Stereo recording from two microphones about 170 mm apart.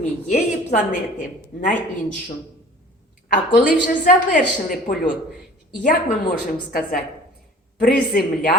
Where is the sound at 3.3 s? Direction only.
55° left (ahead or behind).